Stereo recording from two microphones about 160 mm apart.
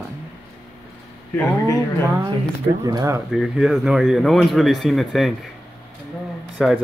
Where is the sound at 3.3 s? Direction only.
5° right (ahead or behind).